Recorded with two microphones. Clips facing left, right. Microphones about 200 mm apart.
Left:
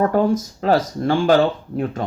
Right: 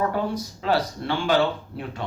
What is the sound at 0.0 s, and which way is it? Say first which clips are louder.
Speech: left 8 dB; 45° left (ahead or behind).